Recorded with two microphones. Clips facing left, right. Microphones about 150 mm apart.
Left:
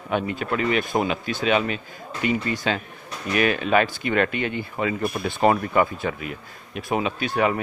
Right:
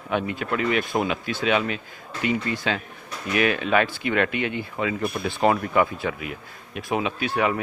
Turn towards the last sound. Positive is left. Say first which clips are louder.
# left 1 dB
turn(degrees=0)  # may be behind; listen again after turning